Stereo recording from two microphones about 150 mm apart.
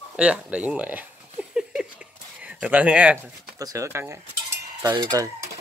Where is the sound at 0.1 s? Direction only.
10° right (ahead or behind).